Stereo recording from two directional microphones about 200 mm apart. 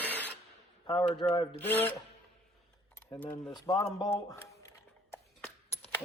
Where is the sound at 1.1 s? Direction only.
25° left (ahead or behind).